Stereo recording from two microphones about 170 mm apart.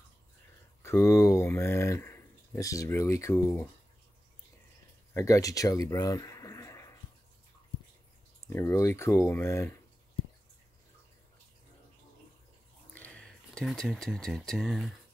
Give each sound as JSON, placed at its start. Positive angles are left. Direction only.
{"t": 0.8, "sound": "speech", "side_deg": 15}
{"t": 5.1, "sound": "speech", "side_deg": 20}
{"t": 8.5, "sound": "speech", "side_deg": 15}
{"t": 12.9, "sound": "speech", "side_deg": 5}